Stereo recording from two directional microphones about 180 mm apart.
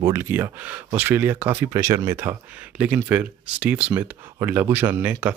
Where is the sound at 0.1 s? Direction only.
15° right (ahead or behind).